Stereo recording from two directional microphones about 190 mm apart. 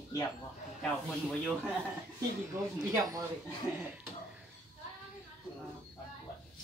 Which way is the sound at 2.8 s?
15° right (ahead or behind).